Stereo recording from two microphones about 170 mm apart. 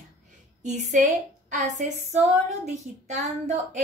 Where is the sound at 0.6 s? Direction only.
45° right (ahead or behind).